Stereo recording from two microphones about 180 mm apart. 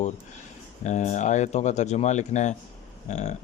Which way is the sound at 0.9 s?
40° left (ahead or behind).